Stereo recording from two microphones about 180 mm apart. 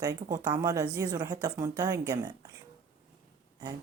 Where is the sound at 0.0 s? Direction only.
20° right (ahead or behind).